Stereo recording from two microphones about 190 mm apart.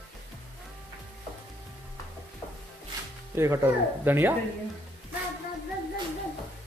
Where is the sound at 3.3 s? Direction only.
15° right (ahead or behind).